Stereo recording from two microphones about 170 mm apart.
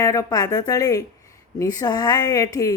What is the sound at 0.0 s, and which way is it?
Speech, 20° left (ahead or behind).